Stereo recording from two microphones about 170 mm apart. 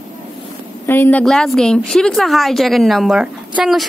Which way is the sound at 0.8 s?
15° left (ahead or behind).